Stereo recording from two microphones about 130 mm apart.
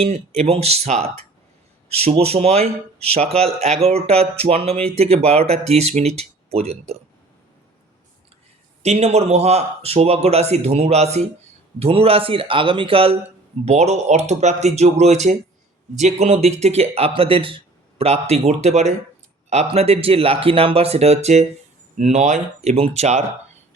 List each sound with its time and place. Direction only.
0.0 s speech: 55° right (ahead or behind)
8.8 s speech: 55° right (ahead or behind)
13.7 s speech: 60° right (ahead or behind)